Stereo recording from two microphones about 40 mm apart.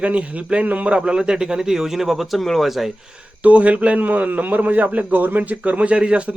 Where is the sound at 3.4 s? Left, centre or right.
Right.